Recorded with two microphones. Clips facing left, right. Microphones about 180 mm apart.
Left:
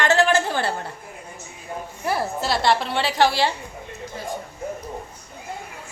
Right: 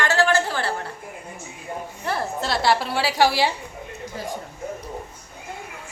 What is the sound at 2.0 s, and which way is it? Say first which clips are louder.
A woman's voice: left 2 dB; 5° left (ahead or behind).